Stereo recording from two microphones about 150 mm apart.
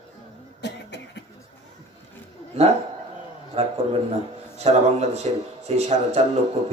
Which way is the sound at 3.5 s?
45° right (ahead or behind).